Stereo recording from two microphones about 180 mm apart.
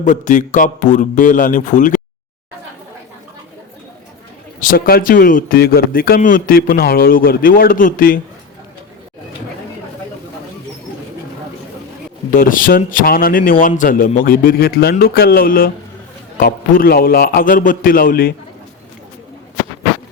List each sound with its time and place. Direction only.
0.0 s speech: 45° left (ahead or behind)
4.6 s speech: 50° left (ahead or behind)
12.3 s speech: 50° left (ahead or behind)